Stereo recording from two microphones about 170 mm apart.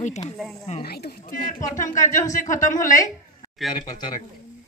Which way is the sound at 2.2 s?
45° left (ahead or behind).